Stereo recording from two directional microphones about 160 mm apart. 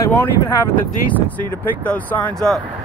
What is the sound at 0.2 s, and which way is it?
Speech, 15° left (ahead or behind).